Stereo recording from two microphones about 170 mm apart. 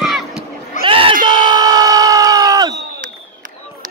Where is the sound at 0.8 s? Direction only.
30° right (ahead or behind).